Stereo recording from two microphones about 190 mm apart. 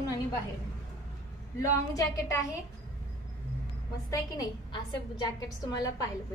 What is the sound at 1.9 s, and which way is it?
Speech, 15° left (ahead or behind).